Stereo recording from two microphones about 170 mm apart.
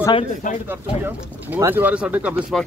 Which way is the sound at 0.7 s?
15° right (ahead or behind).